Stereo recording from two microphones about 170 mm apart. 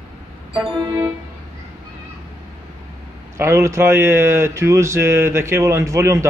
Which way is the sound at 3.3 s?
15° right (ahead or behind).